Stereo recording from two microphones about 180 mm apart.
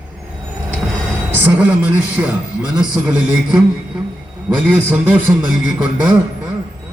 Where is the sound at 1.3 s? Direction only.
10° right (ahead or behind).